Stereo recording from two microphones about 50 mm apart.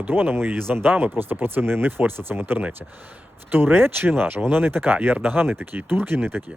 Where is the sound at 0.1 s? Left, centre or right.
Right.